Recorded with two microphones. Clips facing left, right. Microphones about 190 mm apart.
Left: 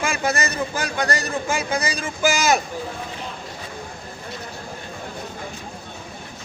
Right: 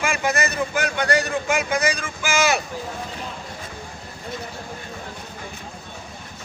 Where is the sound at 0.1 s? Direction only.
35° left (ahead or behind).